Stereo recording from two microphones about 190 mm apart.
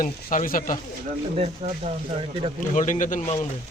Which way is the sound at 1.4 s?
30° right (ahead or behind).